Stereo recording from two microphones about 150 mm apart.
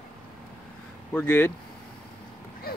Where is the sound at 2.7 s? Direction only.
90° left.